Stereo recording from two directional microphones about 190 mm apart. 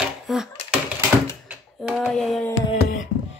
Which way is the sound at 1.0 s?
5° right (ahead or behind).